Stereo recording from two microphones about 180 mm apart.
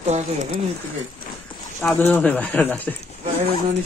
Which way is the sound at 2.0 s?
10° left (ahead or behind).